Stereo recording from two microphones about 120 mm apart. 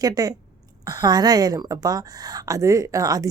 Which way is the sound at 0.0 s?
30° right (ahead or behind).